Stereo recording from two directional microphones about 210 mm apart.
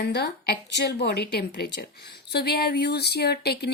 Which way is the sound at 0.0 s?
50° left (ahead or behind).